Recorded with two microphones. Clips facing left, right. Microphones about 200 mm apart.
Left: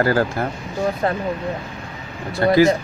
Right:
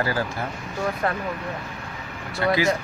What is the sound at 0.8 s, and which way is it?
Speech, 25° left (ahead or behind).